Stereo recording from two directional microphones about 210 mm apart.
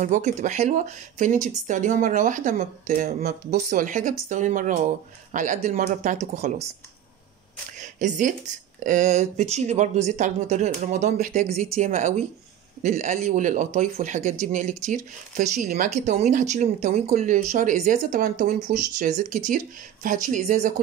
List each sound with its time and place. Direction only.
0.0 s speech: 35° right (ahead or behind)
7.8 s speech: 35° right (ahead or behind)